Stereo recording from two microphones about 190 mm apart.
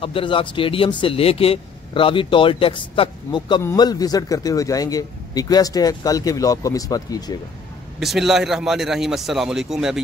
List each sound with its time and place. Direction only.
0.0 s speech: 30° left (ahead or behind)
8.0 s a man's voice: centre (ahead or behind)